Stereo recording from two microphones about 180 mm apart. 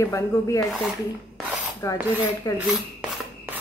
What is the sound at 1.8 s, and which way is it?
Speech, 20° left (ahead or behind).